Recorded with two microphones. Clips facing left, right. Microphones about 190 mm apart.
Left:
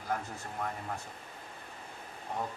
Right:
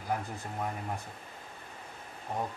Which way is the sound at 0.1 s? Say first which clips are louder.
Right 2 dB; 15° right (ahead or behind).